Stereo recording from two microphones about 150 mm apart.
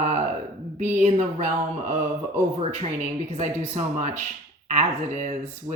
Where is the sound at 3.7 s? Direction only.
50° right (ahead or behind).